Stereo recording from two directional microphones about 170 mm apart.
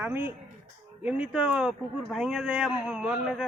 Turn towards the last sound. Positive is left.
turn(degrees=-5)  # may be behind; listen again after turning